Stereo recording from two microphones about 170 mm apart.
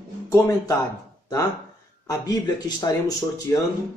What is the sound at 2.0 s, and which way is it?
Speech, 20° left (ahead or behind).